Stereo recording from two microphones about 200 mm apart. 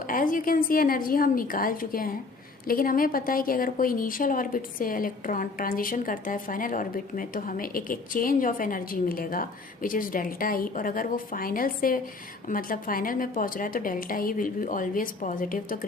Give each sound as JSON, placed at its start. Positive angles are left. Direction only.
{"t": 0.1, "sound": "a woman's voice", "side_deg": 45}